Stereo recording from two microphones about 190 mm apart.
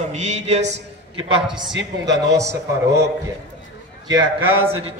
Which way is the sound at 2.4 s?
60° right (ahead or behind).